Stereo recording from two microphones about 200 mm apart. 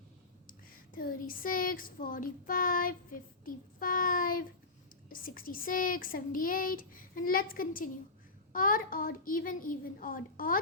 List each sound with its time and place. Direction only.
0.4 s speech: 45° left (ahead or behind)